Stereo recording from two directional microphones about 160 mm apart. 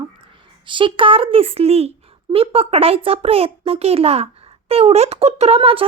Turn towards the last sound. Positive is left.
turn(degrees=-35)  # may be behind; listen again after turning